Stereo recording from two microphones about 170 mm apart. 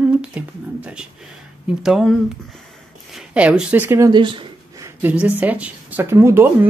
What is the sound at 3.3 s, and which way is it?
Speech, 5° right (ahead or behind).